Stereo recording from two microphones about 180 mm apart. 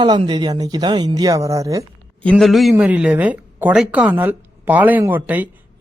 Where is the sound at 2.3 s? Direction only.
Centre (ahead or behind).